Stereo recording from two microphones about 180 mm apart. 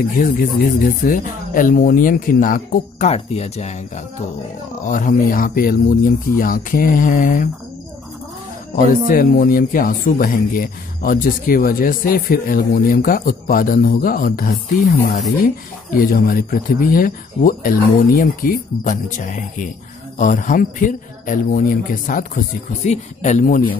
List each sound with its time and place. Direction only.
1.0 s speech: 50° left (ahead or behind)
8.8 s speech: 50° left (ahead or behind)